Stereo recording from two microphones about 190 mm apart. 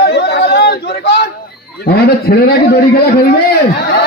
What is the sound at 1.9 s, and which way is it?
A man's voice, 55° left (ahead or behind).